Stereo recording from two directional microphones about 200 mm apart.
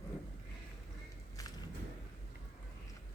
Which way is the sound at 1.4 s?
15° left (ahead or behind).